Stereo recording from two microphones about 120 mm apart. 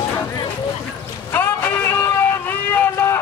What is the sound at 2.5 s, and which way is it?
Vehicle, 20° left (ahead or behind).